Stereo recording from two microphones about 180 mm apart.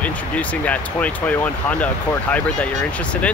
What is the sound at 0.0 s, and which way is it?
Speech, 5° left (ahead or behind).